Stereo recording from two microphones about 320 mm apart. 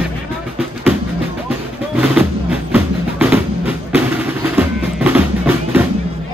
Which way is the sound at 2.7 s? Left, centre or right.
Centre.